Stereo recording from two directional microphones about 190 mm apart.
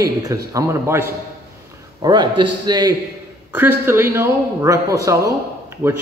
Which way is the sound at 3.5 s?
10° right (ahead or behind).